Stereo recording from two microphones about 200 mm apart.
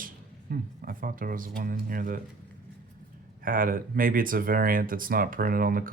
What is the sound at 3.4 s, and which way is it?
Speech, 45° right (ahead or behind).